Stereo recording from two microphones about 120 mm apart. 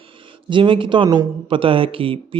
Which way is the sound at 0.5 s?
45° right (ahead or behind).